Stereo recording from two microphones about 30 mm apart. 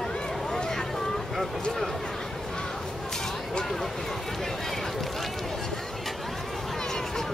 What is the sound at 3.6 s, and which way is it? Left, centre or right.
Run, centre.